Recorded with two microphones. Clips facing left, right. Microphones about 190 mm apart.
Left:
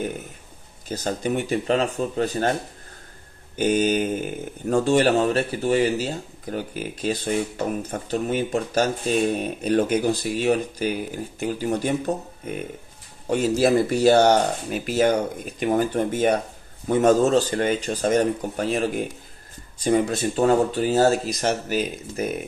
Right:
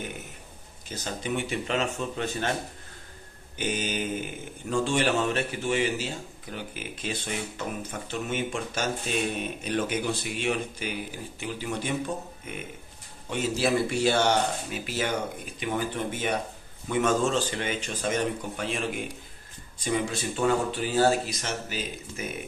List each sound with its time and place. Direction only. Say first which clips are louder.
0.8 s speech: left 7 dB; 40° left (ahead or behind)
3.5 s speech: left 10 dB; 45° left (ahead or behind)